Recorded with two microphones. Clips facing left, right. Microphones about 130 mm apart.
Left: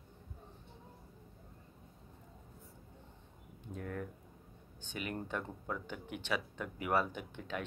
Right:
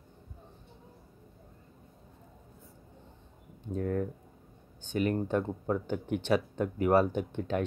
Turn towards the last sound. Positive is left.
turn(degrees=-40)  # may be behind; listen again after turning